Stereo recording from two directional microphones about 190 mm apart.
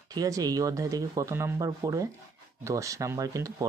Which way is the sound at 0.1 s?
20° right (ahead or behind).